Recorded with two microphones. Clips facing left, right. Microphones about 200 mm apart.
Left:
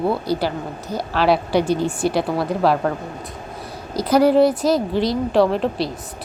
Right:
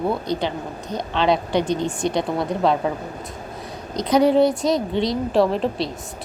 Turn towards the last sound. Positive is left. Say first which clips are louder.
# left 2 dB
turn(degrees=0)  # may be behind; listen again after turning